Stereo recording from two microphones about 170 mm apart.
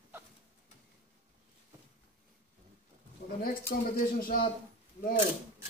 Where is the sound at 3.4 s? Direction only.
60° left (ahead or behind).